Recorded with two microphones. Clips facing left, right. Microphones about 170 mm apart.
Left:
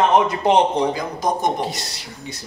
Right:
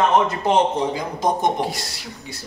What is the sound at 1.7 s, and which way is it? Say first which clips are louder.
Speech: right 1 dB; 20° left (ahead or behind).